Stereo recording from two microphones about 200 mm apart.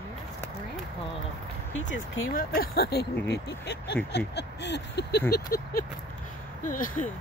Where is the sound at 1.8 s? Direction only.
75° left (ahead or behind).